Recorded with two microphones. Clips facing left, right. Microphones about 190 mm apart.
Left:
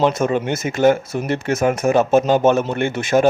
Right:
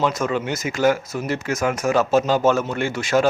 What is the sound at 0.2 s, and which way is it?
Speech, 30° left (ahead or behind).